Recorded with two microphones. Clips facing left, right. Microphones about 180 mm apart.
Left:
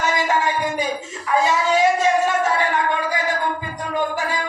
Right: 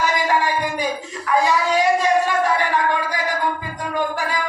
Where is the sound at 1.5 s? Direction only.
25° left (ahead or behind).